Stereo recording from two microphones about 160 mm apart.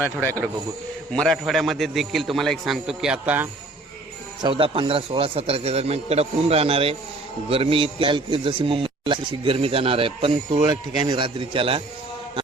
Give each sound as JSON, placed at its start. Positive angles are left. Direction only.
{"t": 0.2, "sound": "a man's voice", "side_deg": 10}
{"t": 4.4, "sound": "a man's voice", "side_deg": -30}